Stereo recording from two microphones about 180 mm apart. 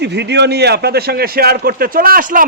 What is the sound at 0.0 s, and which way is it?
A man's voice, 70° right (ahead or behind).